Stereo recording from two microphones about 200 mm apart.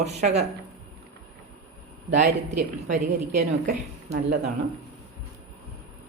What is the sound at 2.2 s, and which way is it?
A woman's voice, 40° right (ahead or behind).